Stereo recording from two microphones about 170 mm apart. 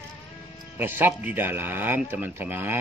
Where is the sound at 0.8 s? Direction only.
10° right (ahead or behind).